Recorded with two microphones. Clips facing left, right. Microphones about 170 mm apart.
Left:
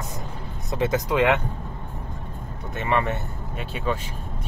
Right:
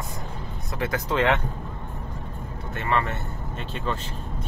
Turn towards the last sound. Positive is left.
turn(degrees=10)  # may be behind; listen again after turning